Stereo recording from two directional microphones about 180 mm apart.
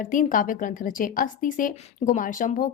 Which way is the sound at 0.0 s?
45° left (ahead or behind).